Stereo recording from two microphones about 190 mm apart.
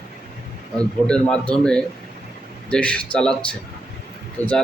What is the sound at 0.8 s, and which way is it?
Speech, 5° left (ahead or behind).